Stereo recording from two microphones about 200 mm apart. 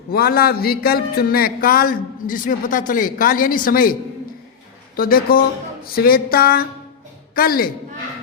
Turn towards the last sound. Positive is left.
turn(degrees=45)  # may be behind; listen again after turning